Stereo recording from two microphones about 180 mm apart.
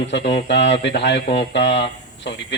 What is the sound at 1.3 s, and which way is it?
Speech, 75° left (ahead or behind).